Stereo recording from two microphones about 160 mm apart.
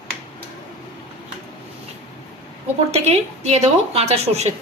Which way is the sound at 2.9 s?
40° right (ahead or behind).